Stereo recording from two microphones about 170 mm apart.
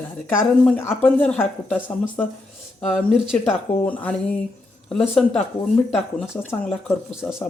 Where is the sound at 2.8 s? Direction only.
Centre (ahead or behind).